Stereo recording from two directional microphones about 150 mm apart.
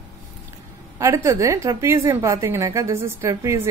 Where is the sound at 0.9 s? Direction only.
20° right (ahead or behind).